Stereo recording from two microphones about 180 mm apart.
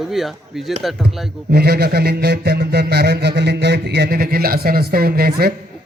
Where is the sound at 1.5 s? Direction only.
60° right (ahead or behind).